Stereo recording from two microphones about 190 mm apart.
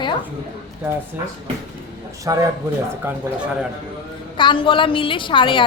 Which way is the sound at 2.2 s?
15° right (ahead or behind).